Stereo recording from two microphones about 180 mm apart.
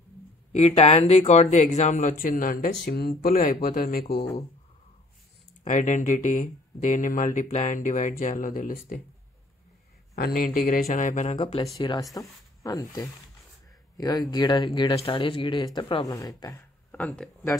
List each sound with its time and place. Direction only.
0.5 s speech: 40° left (ahead or behind); by 4.3 s 60° left (ahead or behind)
5.6 s speech: 45° left (ahead or behind)
10.1 s speech: 55° left (ahead or behind)
11.3 s speech: 25° left (ahead or behind)
16.9 s speech: 5° left (ahead or behind)